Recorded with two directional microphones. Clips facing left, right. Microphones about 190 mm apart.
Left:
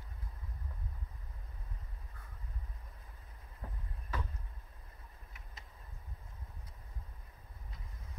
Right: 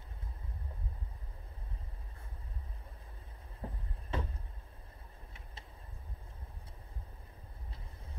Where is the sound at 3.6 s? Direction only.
30° right (ahead or behind).